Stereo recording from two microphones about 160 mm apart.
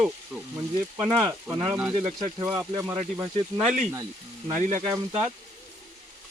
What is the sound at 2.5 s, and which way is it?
Speech, 15° right (ahead or behind).